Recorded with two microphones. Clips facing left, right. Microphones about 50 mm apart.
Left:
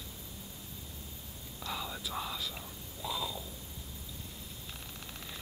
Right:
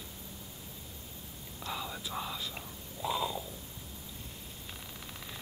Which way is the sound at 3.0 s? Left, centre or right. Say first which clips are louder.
Right 4 dB; right.